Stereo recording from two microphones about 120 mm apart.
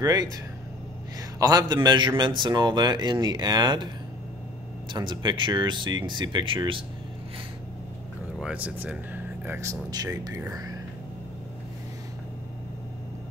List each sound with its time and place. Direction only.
0.0 s a man's voice: 35° right (ahead or behind)
1.4 s a man's voice: 30° right (ahead or behind)
4.9 s a man's voice: 40° right (ahead or behind)
8.4 s speech: 10° right (ahead or behind)
9.6 s speech: 30° right (ahead or behind)